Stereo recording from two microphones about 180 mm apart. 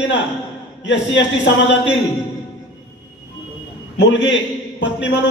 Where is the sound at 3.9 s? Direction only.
80° left.